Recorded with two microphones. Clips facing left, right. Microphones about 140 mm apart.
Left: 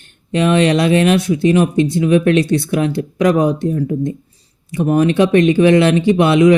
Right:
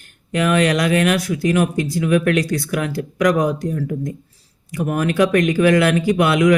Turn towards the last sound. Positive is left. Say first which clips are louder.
# left 4 dB
turn(degrees=25)  # may be behind; listen again after turning